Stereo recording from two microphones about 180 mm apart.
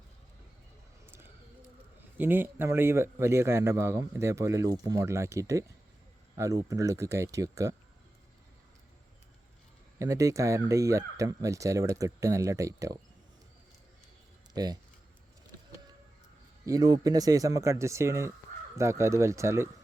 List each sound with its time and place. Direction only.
1.0 s bird: 15° right (ahead or behind)
2.1 s a man's voice: 10° right (ahead or behind)
10.0 s a man's voice: 15° right (ahead or behind)
14.5 s speech: 20° right (ahead or behind)
16.6 s a man's voice: 20° right (ahead or behind)